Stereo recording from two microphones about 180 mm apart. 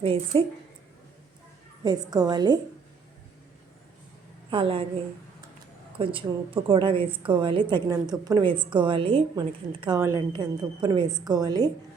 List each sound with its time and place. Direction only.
0.0 s a woman's voice: 30° right (ahead or behind)
1.8 s a woman's voice: 20° right (ahead or behind)
4.5 s a woman's voice: 30° right (ahead or behind)
6.0 s a woman's voice: 30° right (ahead or behind)